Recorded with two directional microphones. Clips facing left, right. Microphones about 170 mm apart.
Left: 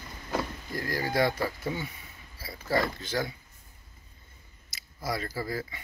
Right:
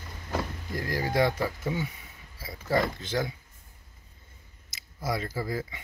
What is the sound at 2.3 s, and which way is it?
Pulleys, 20° right (ahead or behind).